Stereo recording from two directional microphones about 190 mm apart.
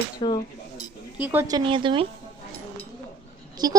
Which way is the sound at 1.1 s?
10° right (ahead or behind).